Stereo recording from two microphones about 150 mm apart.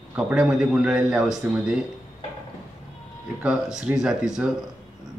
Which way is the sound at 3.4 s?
5° right (ahead or behind).